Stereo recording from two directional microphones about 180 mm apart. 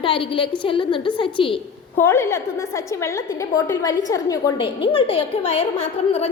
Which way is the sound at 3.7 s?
20° left (ahead or behind).